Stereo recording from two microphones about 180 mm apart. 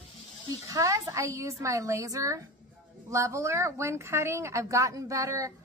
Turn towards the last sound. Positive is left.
turn(degrees=-15)  # may be behind; listen again after turning